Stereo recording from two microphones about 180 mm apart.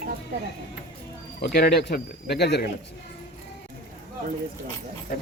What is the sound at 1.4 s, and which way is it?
Speech, 60° left (ahead or behind).